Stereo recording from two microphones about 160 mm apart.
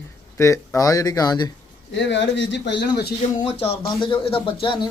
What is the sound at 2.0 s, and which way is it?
Speech, 90° left.